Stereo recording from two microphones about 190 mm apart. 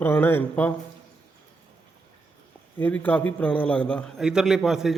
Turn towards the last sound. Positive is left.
turn(degrees=0)  # may be behind; listen again after turning